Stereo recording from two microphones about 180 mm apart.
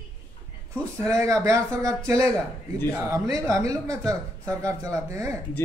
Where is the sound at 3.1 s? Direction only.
15° right (ahead or behind).